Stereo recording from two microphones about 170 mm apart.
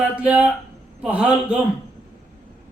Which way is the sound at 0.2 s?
10° right (ahead or behind).